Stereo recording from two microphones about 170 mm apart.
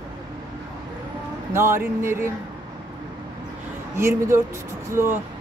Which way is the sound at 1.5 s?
15° right (ahead or behind).